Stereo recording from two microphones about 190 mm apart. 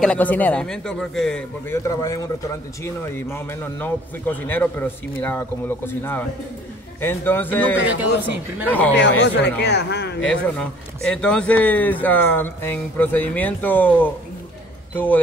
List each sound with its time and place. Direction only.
0.0 s speech: 5° left (ahead or behind)
1.7 s a man's voice: 15° left (ahead or behind)
8.9 s a man's voice: 65° left (ahead or behind)
10.2 s a man's voice: 5° left (ahead or behind)